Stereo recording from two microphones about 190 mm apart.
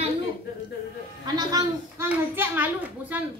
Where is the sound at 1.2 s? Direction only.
20° right (ahead or behind).